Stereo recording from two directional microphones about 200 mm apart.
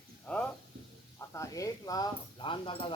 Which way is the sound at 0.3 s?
5° left (ahead or behind).